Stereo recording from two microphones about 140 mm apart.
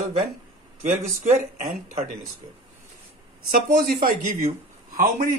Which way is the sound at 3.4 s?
80° right.